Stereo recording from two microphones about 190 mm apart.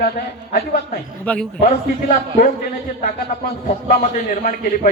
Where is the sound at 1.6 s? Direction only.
45° left (ahead or behind).